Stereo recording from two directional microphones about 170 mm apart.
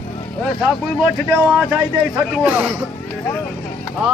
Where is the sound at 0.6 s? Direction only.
Centre (ahead or behind).